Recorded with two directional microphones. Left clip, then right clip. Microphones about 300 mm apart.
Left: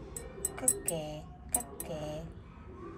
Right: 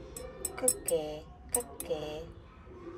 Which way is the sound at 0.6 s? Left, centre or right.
Right.